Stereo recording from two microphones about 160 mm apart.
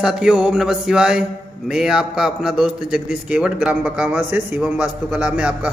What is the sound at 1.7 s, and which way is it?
A man's voice, 5° right (ahead or behind).